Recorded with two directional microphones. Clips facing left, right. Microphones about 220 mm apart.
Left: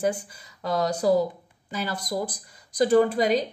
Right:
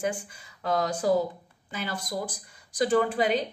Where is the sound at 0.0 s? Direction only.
40° left (ahead or behind).